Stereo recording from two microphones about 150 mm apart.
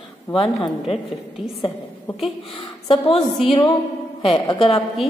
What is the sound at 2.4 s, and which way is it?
Speech, 35° left (ahead or behind).